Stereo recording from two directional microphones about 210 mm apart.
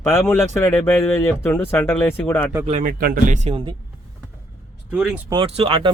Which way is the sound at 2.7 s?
40° right (ahead or behind).